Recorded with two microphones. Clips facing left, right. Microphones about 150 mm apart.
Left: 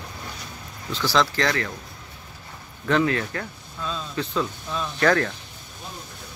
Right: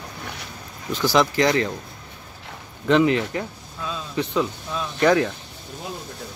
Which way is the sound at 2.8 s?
20° right (ahead or behind).